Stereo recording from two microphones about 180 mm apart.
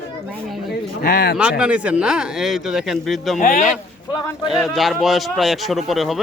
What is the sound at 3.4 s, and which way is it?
Speech, 45° left (ahead or behind).